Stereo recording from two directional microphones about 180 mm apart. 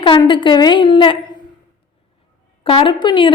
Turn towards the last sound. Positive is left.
turn(degrees=25)  # may be behind; listen again after turning